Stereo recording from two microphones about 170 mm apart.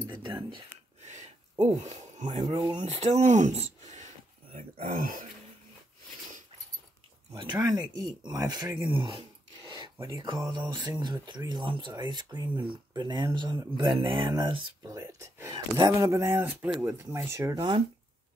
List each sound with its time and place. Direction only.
0.0 s a sound: 25° right (ahead or behind)
1.0 s a sound: 40° right (ahead or behind)
2.3 s speech: 25° right (ahead or behind)
2.8 s speech: 40° right (ahead or behind)
7.3 s speech: 25° right (ahead or behind)
10.0 s speech: 25° right (ahead or behind)